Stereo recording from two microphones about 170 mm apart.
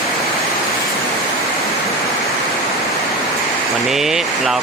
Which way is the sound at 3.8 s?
Centre (ahead or behind).